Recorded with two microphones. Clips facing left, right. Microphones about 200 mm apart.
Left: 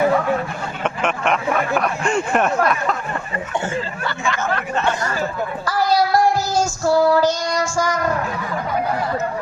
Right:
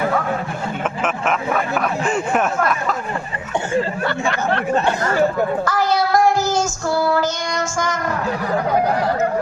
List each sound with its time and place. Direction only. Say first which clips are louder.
1.0 s speech: left 2 dB; 5° right (ahead or behind)
3.8 s speech: right 6 dB; 55° right (ahead or behind)
4.4 s speech: right 4 dB; 30° right (ahead or behind)
5.6 s child singing: even; 35° left (ahead or behind)
8.4 s speech: right 5 dB; 35° right (ahead or behind)